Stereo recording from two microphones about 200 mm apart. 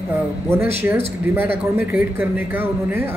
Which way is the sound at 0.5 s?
10° right (ahead or behind).